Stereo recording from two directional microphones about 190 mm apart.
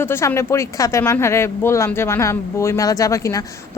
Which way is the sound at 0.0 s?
10° left (ahead or behind).